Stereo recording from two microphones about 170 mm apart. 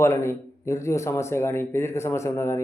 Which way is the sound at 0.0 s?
15° left (ahead or behind).